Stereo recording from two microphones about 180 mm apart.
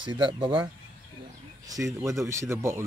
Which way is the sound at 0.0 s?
25° right (ahead or behind).